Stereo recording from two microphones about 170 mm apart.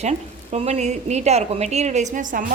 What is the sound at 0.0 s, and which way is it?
Speech, 40° right (ahead or behind).